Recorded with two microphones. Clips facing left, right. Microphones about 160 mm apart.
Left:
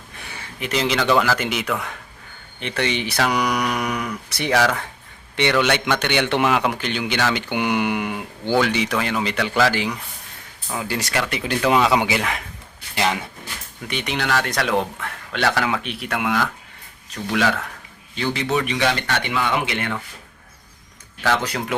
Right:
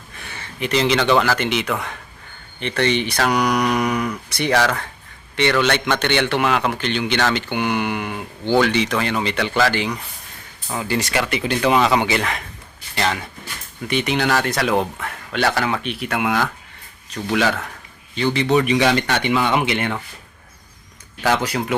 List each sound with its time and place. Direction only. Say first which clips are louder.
0.3 s a man's voice: right 4 dB; 5° left (ahead or behind)
13.8 s speech: right 5 dB; centre (ahead or behind)
18.6 s speech: right 5 dB; 15° right (ahead or behind)
21.2 s speech: right 2 dB; 10° right (ahead or behind)